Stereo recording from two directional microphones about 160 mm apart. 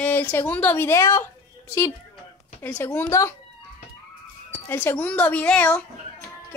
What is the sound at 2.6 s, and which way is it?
Speech, 15° left (ahead or behind).